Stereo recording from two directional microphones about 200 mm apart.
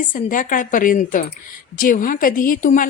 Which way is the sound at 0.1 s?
40° left (ahead or behind).